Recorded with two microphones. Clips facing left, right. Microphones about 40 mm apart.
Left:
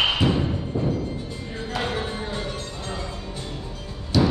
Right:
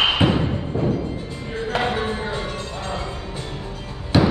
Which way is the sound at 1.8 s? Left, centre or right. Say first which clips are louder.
Right 5 dB; right.